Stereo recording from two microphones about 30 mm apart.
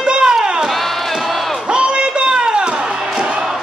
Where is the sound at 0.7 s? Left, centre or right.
Centre.